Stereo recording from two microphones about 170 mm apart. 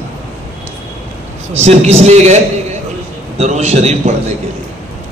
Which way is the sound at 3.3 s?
40° right (ahead or behind).